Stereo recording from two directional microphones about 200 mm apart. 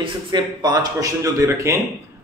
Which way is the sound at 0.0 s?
20° right (ahead or behind).